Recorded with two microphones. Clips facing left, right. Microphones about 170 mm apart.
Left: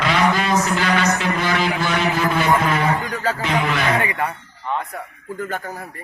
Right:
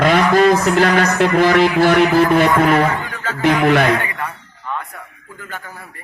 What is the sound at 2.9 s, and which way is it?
Speech, 40° left (ahead or behind).